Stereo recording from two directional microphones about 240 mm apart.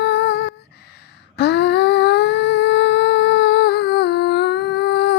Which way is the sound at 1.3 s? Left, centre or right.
Left.